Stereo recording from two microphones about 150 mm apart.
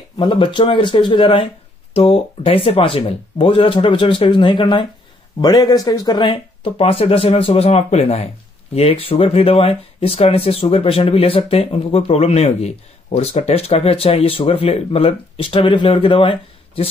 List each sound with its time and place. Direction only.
0.2 s speech: 30° left (ahead or behind)